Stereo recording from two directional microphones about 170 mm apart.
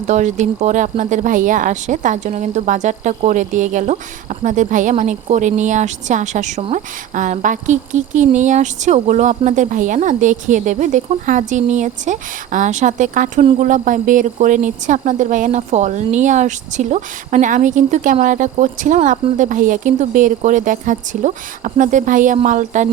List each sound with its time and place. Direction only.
0.1 s speech: 45° right (ahead or behind)